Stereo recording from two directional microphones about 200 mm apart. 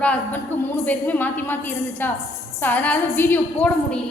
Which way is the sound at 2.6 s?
10° left (ahead or behind).